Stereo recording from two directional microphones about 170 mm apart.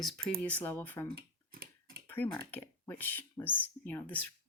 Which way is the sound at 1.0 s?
60° right (ahead or behind).